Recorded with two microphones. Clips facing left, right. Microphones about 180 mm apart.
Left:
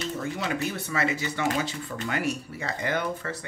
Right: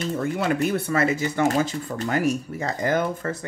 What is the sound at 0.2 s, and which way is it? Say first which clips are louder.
Speech: right 8 dB; 55° right (ahead or behind).